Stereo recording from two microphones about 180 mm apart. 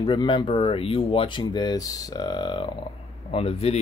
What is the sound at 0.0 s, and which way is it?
Speech, 25° left (ahead or behind).